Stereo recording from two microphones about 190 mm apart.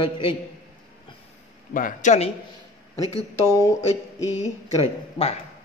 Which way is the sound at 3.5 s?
15° left (ahead or behind).